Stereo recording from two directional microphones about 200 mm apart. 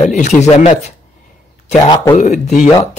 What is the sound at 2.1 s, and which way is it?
Speech, 35° left (ahead or behind).